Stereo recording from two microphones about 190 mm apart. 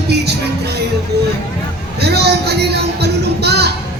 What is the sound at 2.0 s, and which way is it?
Music, 60° right (ahead or behind).